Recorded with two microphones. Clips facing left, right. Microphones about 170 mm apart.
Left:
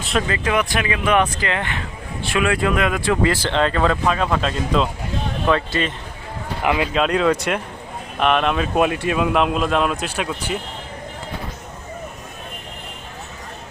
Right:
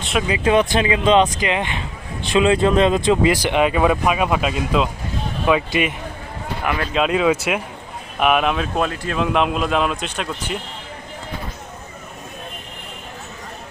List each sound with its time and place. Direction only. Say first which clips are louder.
0.0 s vehicle: even; centre (ahead or behind)
0.4 s speech: right 5 dB; 25° right (ahead or behind); by 5.9 s 10° right (ahead or behind)
6.7 s speech: left 4 dB; 15° left (ahead or behind)
6.9 s speech: right 4 dB; 5° right (ahead or behind)